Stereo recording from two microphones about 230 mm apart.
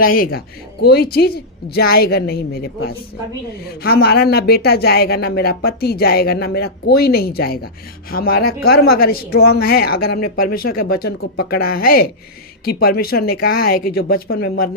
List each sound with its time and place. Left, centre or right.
0.0 s a woman's voice: left